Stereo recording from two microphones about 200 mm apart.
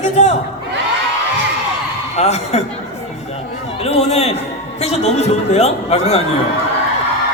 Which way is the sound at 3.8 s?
30° left (ahead or behind).